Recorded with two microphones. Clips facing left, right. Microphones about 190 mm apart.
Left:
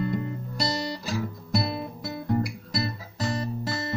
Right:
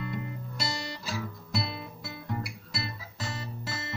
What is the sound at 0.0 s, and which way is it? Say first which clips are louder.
Music: left 7 dB; 40° left (ahead or behind).